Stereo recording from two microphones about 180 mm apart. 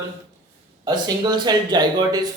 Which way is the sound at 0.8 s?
25° right (ahead or behind).